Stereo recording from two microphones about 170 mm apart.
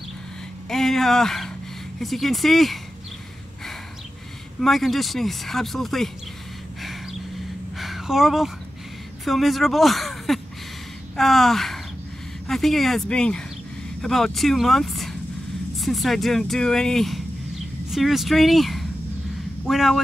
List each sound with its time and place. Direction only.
0.7 s speech: centre (ahead or behind)
4.6 s speech: centre (ahead or behind)
6.8 s a sound: centre (ahead or behind)
9.2 s speech: centre (ahead or behind)